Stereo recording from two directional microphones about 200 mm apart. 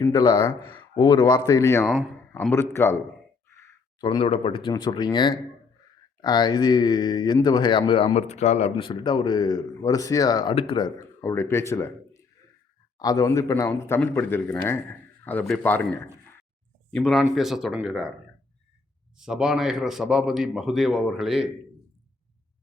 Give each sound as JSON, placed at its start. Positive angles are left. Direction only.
{"t": 0.0, "sound": "a man's voice", "side_deg": 20}
{"t": 3.5, "sound": "a sound", "side_deg": 20}
{"t": 4.7, "sound": "speech", "side_deg": 20}
{"t": 8.7, "sound": "a man's voice", "side_deg": 25}
{"t": 19.2, "sound": "speech", "side_deg": -5}